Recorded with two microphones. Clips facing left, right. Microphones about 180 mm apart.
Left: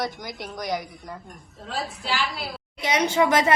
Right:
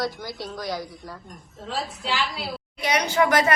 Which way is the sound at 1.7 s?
Centre (ahead or behind).